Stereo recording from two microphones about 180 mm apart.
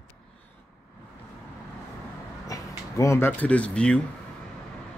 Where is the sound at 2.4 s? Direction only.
15° left (ahead or behind).